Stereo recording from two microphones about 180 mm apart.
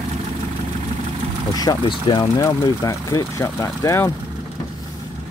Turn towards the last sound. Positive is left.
turn(degrees=15)  # may be behind; listen again after turning